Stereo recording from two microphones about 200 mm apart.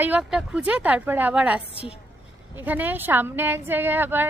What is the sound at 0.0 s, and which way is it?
A woman's voice, 5° right (ahead or behind).